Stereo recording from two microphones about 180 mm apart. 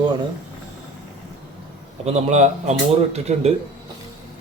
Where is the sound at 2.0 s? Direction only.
40° right (ahead or behind).